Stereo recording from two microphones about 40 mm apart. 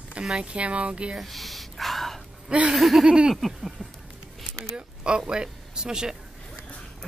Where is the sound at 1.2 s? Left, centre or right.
Centre.